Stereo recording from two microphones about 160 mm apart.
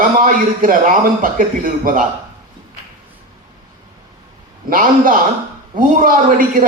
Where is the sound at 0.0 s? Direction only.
60° right (ahead or behind).